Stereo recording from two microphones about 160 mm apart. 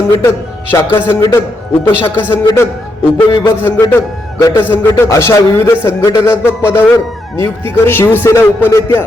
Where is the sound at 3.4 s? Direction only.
15° left (ahead or behind).